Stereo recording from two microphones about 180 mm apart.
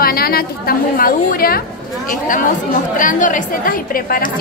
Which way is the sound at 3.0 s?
45° left (ahead or behind).